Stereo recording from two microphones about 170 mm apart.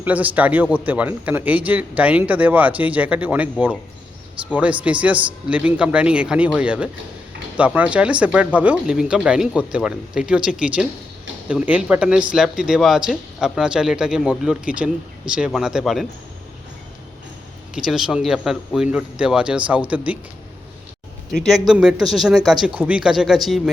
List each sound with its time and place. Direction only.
0.0 s a man's voice: 10° right (ahead or behind)
17.7 s speech: 5° right (ahead or behind)
21.7 s speech: 5° right (ahead or behind)